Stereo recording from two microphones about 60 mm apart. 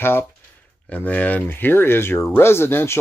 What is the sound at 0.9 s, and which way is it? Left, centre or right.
Speech, left.